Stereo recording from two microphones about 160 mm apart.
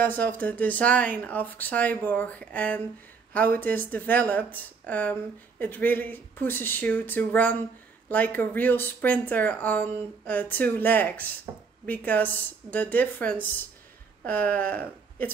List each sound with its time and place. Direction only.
0.0 s speech: 10° left (ahead or behind)
11.5 s speech: 25° right (ahead or behind)
11.8 s speech: 10° left (ahead or behind)